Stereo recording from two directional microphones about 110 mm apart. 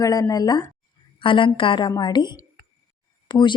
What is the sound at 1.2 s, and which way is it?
A woman's voice, 50° left (ahead or behind).